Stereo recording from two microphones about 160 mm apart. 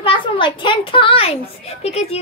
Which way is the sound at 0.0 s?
30° left (ahead or behind).